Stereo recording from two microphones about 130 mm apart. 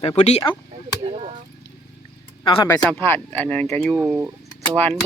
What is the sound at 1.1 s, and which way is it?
Speech, 50° right (ahead or behind).